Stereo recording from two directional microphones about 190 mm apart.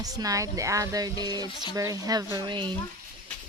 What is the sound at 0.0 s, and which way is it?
Speech, 20° right (ahead or behind).